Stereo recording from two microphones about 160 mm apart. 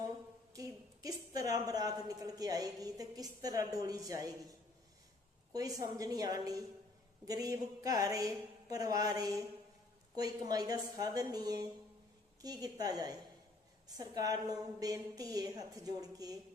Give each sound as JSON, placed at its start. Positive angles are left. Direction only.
{"t": 0.5, "sound": "a woman's voice", "side_deg": -20}
{"t": 5.5, "sound": "a woman's voice", "side_deg": -20}